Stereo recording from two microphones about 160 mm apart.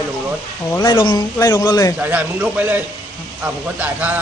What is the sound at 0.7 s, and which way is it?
Speech, 25° left (ahead or behind).